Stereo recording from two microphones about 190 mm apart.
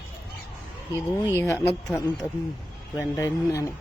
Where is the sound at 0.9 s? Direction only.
15° left (ahead or behind).